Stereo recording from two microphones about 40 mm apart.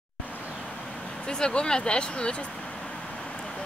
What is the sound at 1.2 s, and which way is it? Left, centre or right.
Speech, left.